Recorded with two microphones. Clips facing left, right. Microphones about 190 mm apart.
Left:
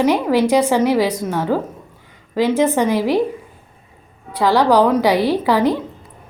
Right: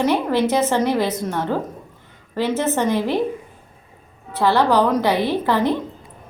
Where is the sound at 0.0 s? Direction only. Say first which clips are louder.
Left 3 dB; 10° left (ahead or behind).